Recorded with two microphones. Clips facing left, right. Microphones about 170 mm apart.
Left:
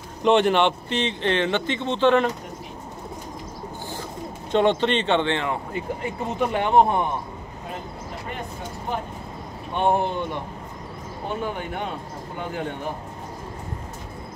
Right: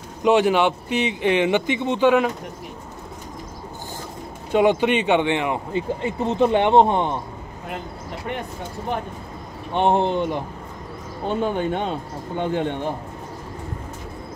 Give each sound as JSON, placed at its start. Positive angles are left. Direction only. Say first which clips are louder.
{"t": 0.2, "sound": "speech", "louder": "right 1 dB", "side_deg": -5}
{"t": 4.5, "sound": "speech", "louder": "right 2 dB", "side_deg": -10}
{"t": 9.8, "sound": "speech", "louder": "right 3 dB", "side_deg": -25}